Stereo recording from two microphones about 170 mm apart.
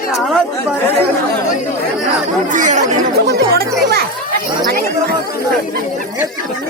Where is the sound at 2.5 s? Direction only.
45° right (ahead or behind).